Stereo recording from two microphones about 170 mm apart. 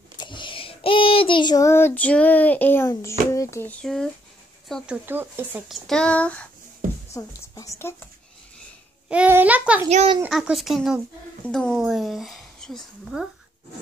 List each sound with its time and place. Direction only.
0.2 s child singing: 30° left (ahead or behind); by 4.1 s centre (ahead or behind)
4.6 s speech: centre (ahead or behind)
5.9 s speech: 5° left (ahead or behind)
7.2 s a woman's voice: 20° left (ahead or behind)
9.1 s speech: 10° right (ahead or behind)
9.8 s a child's voice: 40° right (ahead or behind)
10.3 s a woman's voice: centre (ahead or behind)